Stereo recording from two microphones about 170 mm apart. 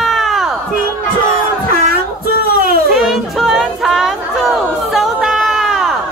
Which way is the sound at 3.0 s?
Centre (ahead or behind).